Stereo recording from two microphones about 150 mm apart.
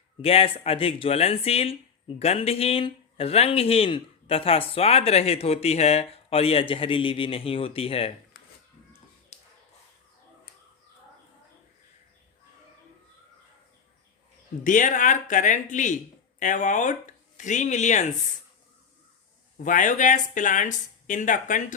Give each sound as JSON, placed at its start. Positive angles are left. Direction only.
{"t": 0.2, "sound": "speech", "side_deg": 40}
{"t": 8.4, "sound": "dishes", "side_deg": 90}
{"t": 9.3, "sound": "a sound", "side_deg": 50}
{"t": 14.6, "sound": "speech", "side_deg": 60}
{"t": 19.5, "sound": "speech", "side_deg": 60}